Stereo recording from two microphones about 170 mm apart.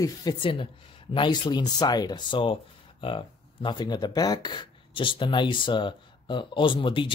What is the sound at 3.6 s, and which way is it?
Speech, 25° left (ahead or behind).